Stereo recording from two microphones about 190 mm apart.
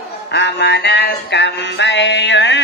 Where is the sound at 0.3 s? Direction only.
65° left (ahead or behind).